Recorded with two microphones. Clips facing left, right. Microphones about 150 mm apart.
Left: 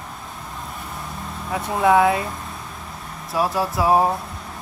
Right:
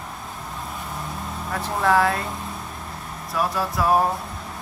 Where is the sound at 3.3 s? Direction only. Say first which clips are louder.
Left 3 dB; 30° left (ahead or behind).